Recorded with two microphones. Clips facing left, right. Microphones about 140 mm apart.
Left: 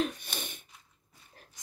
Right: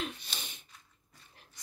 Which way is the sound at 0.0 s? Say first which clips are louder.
Left 7 dB; 50° left (ahead or behind).